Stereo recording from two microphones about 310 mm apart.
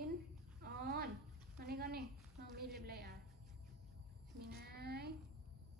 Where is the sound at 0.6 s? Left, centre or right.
Right.